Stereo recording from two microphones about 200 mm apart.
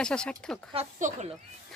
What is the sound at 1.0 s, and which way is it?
Speech, 40° right (ahead or behind).